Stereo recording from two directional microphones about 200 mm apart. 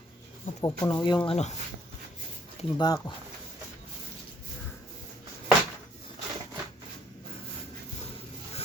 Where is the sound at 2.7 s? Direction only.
20° left (ahead or behind).